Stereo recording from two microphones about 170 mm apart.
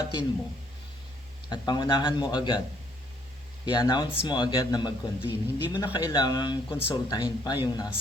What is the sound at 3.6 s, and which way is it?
Speech, 25° left (ahead or behind).